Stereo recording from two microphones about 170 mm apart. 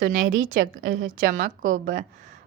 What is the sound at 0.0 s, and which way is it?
A woman's voice, 50° right (ahead or behind).